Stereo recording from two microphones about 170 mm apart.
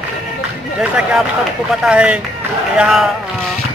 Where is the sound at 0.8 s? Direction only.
5° right (ahead or behind).